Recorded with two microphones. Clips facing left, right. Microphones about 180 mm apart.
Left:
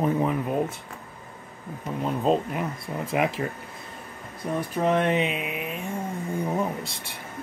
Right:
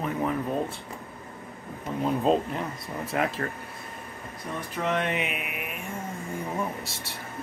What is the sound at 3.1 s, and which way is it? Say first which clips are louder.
Speech: left 3 dB; 15° left (ahead or behind).